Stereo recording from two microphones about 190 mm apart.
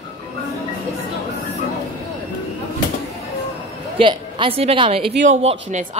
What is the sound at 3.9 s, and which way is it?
A woman's voice, 25° right (ahead or behind).